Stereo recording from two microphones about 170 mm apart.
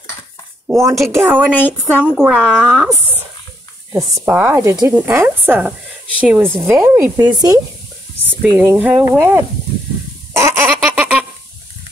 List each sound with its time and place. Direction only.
0.7 s speech: 15° right (ahead or behind)
1.5 s a woman's voice: 10° left (ahead or behind)
2.0 s a woman's voice: 5° right (ahead or behind)
6.7 s speech: 20° right (ahead or behind)
8.4 s speech: 10° right (ahead or behind)
10.3 s baby laughter: 15° right (ahead or behind)